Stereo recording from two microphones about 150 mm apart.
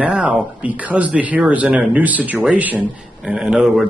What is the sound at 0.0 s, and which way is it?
Speech, 10° right (ahead or behind).